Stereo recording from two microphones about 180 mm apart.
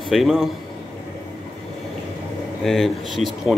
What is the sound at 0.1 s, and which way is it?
Speech, centre (ahead or behind).